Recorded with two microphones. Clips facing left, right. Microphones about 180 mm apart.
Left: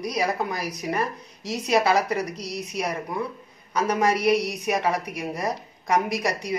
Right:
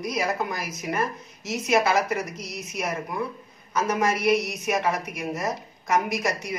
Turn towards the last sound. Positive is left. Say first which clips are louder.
# left 1 dB
turn(degrees=35)  # may be behind; listen again after turning